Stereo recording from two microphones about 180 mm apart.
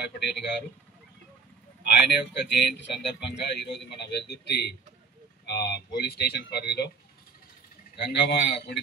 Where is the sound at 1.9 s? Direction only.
70° left (ahead or behind).